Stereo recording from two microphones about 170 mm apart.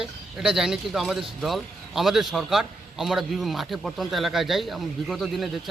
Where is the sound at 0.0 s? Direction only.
5° right (ahead or behind).